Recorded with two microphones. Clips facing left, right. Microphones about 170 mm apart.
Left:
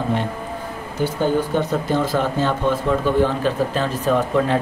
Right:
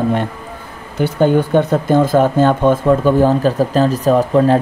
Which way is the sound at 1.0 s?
60° right (ahead or behind).